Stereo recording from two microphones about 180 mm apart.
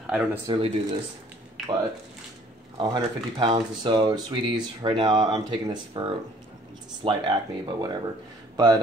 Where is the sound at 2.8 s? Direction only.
25° right (ahead or behind).